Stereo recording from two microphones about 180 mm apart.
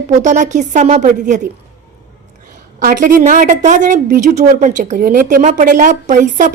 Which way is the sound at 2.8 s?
50° right (ahead or behind).